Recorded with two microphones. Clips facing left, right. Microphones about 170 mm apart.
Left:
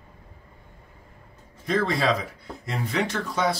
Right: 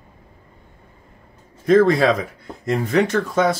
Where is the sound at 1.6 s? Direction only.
50° right (ahead or behind).